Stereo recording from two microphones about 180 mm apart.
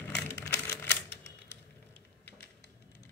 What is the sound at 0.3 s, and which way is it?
Typewriter, 15° left (ahead or behind).